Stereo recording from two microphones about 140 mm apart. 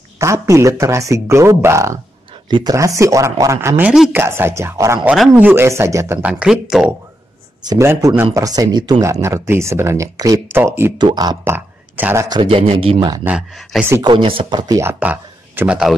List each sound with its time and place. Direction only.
0.2 s speech: 20° right (ahead or behind)
3.8 s speech: 5° right (ahead or behind)
4.1 s speech: 15° right (ahead or behind)
5.1 s speech: centre (ahead or behind)
5.4 s speech: 15° right (ahead or behind)
7.6 s speech: 25° right (ahead or behind)
11.0 s speech: 30° right (ahead or behind)
11.4 s speech: 15° right (ahead or behind)
12.3 s speech: 40° right (ahead or behind)
14.8 s speech: 15° right (ahead or behind)